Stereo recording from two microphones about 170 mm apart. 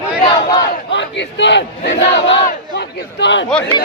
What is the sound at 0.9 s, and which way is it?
A man's voice, 90° left.